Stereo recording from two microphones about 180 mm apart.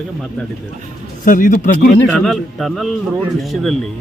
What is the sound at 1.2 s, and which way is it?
Speech, 45° left (ahead or behind).